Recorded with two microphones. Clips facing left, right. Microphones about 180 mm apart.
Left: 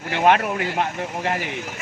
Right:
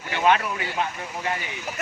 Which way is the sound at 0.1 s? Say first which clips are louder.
Left 3 dB; 55° left (ahead or behind).